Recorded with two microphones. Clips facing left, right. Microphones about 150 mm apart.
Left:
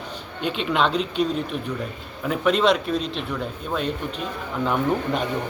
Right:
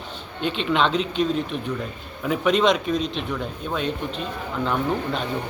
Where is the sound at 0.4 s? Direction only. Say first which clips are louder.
Right 1 dB; 5° left (ahead or behind).